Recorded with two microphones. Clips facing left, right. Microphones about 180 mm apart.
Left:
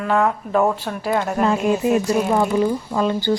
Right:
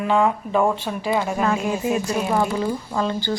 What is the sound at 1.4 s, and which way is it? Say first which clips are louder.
Speech: left 4 dB; 20° left (ahead or behind).